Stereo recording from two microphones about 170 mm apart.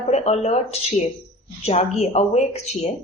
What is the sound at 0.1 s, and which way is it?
A woman's voice, 40° left (ahead or behind).